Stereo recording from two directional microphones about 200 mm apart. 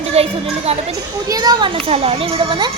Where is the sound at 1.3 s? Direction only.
20° right (ahead or behind).